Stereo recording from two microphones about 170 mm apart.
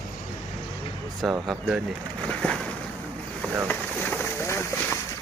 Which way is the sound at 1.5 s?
Centre (ahead or behind).